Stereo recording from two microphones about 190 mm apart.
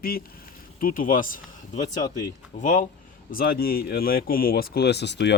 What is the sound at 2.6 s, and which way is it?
Speech, 45° left (ahead or behind).